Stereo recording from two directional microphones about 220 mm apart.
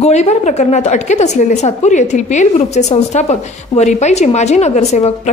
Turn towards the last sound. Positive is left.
turn(degrees=30)  # may be behind; listen again after turning